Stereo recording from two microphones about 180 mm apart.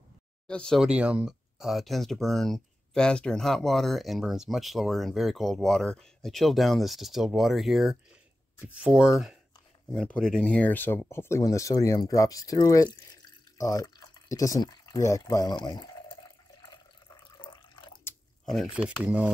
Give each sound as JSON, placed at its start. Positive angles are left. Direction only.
{"t": 0.5, "sound": "speech", "side_deg": 5}
{"t": 9.9, "sound": "speech", "side_deg": 5}
{"t": 16.6, "sound": "water", "side_deg": 25}
{"t": 18.4, "sound": "speech", "side_deg": 0}